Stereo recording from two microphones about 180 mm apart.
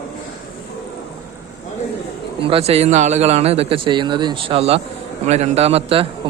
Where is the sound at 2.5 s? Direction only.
35° right (ahead or behind).